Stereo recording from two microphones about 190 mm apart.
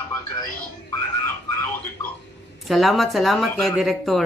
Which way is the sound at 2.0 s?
15° left (ahead or behind).